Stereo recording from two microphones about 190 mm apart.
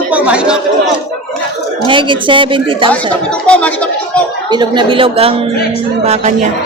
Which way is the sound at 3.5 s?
5° left (ahead or behind).